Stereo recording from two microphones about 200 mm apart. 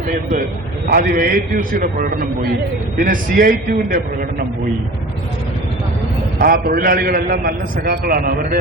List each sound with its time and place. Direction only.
0.1 s a man's voice: 45° right (ahead or behind)
6.4 s a man's voice: 50° right (ahead or behind)